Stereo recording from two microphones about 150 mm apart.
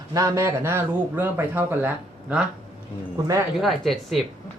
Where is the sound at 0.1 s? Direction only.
20° right (ahead or behind).